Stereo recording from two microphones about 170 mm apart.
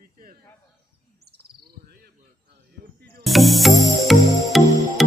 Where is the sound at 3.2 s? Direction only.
Centre (ahead or behind).